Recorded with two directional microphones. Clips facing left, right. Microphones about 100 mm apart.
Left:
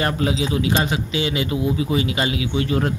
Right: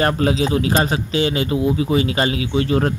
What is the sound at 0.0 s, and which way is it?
Speech, 40° right (ahead or behind).